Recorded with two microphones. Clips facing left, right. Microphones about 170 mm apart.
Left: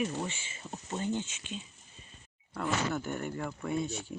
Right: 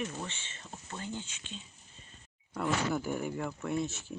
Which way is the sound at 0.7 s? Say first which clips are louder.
Left 7 dB; 20° left (ahead or behind).